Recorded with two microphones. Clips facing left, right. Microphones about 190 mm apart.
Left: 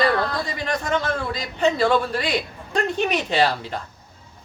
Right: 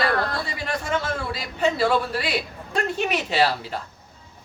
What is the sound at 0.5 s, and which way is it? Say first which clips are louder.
A man's voice: left 3 dB; 5° right (ahead or behind).